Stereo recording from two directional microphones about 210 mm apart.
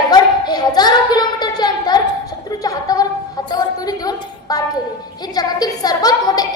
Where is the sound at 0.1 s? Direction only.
20° left (ahead or behind).